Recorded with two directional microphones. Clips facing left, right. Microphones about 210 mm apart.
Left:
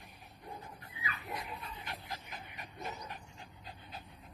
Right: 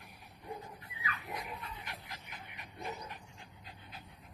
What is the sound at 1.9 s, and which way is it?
Dog, 35° left (ahead or behind).